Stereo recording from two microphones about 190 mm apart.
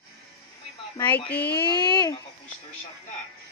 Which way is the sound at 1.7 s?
20° left (ahead or behind).